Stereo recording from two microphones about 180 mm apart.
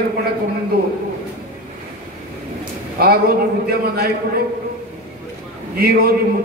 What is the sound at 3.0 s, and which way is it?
Speech, 60° right (ahead or behind).